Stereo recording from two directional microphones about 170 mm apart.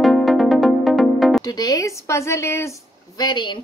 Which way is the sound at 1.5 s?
20° left (ahead or behind).